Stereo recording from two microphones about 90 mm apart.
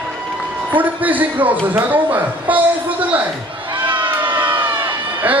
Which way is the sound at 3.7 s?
65° right (ahead or behind).